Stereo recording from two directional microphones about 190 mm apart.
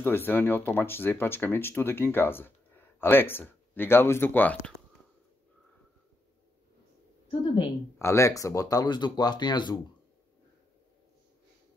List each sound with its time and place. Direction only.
0.0 s speech: 10° left (ahead or behind)
7.2 s a woman's voice: 25° left (ahead or behind)
8.0 s speech: 15° left (ahead or behind)